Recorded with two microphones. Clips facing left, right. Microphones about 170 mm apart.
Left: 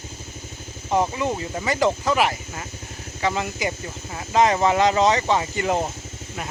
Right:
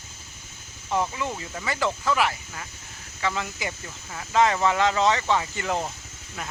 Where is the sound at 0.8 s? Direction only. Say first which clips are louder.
Left 5 dB; 30° left (ahead or behind).